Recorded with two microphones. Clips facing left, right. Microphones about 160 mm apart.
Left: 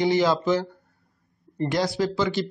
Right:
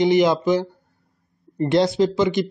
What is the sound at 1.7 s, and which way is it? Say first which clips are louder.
Speech: right 7 dB; 25° right (ahead or behind).